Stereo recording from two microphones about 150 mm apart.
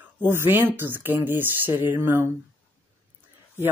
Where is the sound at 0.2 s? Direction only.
15° right (ahead or behind).